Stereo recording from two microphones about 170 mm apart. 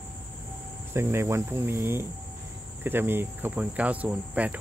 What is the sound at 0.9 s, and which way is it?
Cricket, 15° right (ahead or behind).